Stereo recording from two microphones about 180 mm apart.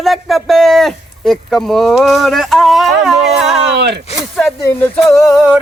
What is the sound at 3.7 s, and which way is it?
Speech, 70° right (ahead or behind).